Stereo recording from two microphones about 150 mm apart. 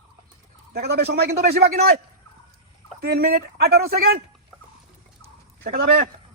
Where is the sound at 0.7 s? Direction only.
90° right.